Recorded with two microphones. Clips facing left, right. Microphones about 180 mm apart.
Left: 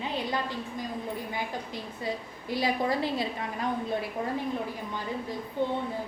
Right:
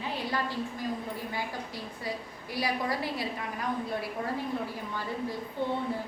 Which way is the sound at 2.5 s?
25° left (ahead or behind).